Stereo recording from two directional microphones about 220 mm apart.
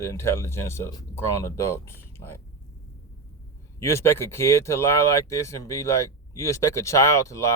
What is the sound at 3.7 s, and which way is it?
Speech, 10° left (ahead or behind).